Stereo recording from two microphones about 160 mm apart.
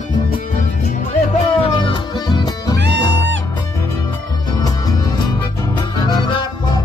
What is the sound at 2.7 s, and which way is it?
Music, 90° right.